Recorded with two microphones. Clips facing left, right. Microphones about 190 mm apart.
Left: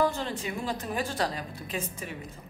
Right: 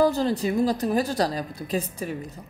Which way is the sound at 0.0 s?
35° right (ahead or behind).